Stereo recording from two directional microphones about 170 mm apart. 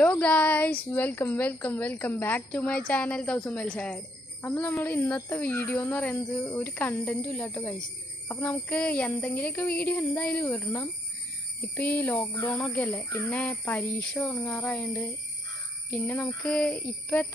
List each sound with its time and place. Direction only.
0.0 s a woman's voice: 10° left (ahead or behind)
16.4 s a woman's voice: 5° left (ahead or behind)